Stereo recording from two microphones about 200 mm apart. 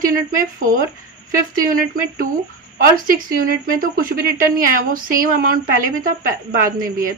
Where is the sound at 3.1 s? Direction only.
45° right (ahead or behind).